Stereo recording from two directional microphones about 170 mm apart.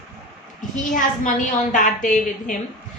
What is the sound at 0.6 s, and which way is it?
A woman's voice, 50° left (ahead or behind).